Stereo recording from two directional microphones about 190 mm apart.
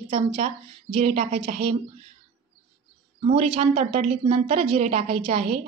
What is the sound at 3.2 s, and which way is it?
A woman's voice, 30° right (ahead or behind).